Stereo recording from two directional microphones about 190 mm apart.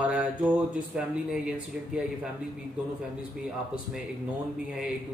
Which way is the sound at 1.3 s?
5° right (ahead or behind).